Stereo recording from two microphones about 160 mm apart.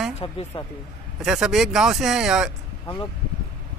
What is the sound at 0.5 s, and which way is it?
Speech, 30° left (ahead or behind).